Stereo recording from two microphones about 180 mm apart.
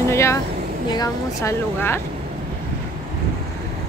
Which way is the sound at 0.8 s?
20° left (ahead or behind).